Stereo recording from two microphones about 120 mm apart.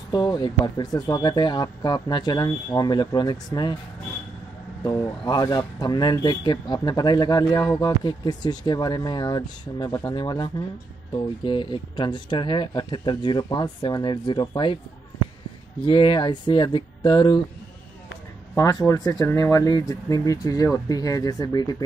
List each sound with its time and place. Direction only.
0.1 s speech: 35° left (ahead or behind)
4.8 s speech: 30° left (ahead or behind)
15.8 s speech: 45° left (ahead or behind)
18.6 s speech: 30° left (ahead or behind)